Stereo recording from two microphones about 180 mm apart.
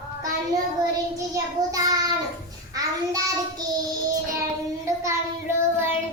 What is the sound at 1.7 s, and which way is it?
Child singing, 20° right (ahead or behind).